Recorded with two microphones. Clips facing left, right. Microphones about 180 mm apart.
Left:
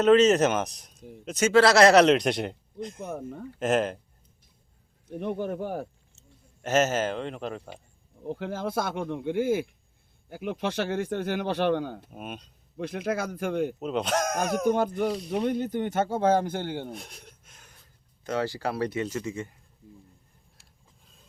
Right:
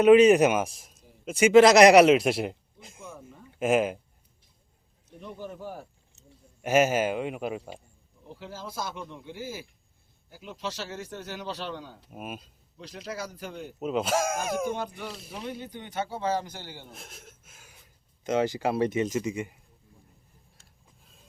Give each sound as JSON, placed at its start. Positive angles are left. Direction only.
{"t": 0.0, "sound": "speech", "side_deg": -10}
{"t": 3.0, "sound": "speech", "side_deg": 70}
{"t": 3.6, "sound": "speech", "side_deg": -10}
{"t": 5.2, "sound": "speech", "side_deg": 65}
{"t": 6.1, "sound": "speech", "side_deg": -10}
{"t": 8.2, "sound": "speech", "side_deg": 55}
{"t": 12.1, "sound": "speech", "side_deg": -5}
{"t": 12.7, "sound": "speech", "side_deg": 55}
{"t": 13.7, "sound": "speech", "side_deg": -5}
{"t": 14.8, "sound": "speech", "side_deg": 50}
{"t": 16.9, "sound": "gasp", "side_deg": 0}
{"t": 18.2, "sound": "speech", "side_deg": -20}